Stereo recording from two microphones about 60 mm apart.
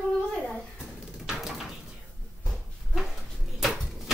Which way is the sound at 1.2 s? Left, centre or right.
Centre.